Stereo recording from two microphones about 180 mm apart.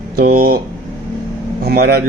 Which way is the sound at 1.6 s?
60° right (ahead or behind).